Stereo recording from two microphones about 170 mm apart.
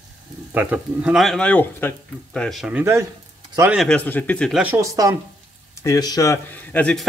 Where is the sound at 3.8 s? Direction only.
5° left (ahead or behind).